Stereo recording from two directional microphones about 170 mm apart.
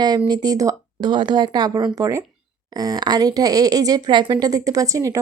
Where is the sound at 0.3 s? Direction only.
25° right (ahead or behind).